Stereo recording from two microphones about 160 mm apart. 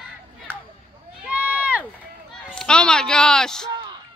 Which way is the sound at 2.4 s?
5° left (ahead or behind).